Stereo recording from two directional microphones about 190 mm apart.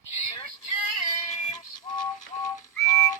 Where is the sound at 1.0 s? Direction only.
20° left (ahead or behind).